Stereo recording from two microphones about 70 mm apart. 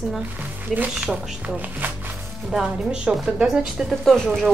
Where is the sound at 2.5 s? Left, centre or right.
Centre.